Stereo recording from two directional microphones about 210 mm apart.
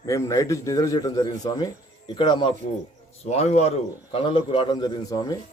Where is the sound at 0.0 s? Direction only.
15° left (ahead or behind).